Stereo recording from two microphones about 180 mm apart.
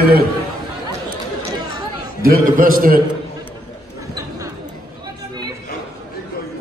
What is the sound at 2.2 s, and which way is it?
Speech, 50° right (ahead or behind).